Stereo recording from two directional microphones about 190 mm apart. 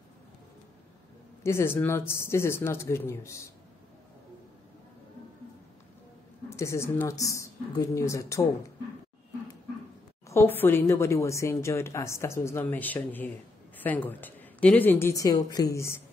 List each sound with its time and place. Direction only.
1.4 s a woman's voice: 15° left (ahead or behind)
6.5 s a woman's voice: 15° left (ahead or behind)
10.3 s a woman's voice: 10° left (ahead or behind)